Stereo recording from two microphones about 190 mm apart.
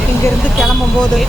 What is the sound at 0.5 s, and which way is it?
Speech, centre (ahead or behind).